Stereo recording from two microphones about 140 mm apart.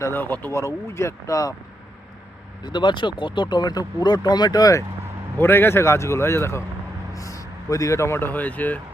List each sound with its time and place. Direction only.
0.0 s speech: 15° left (ahead or behind)
2.6 s speech: 35° left (ahead or behind)
5.4 s a man's voice: 15° left (ahead or behind)